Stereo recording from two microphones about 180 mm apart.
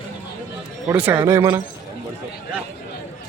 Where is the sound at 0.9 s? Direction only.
10° right (ahead or behind).